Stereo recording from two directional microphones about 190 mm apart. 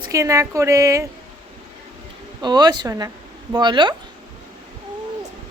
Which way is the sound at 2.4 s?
20° right (ahead or behind).